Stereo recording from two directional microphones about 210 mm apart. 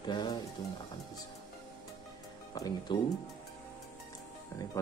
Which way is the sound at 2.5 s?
20° left (ahead or behind).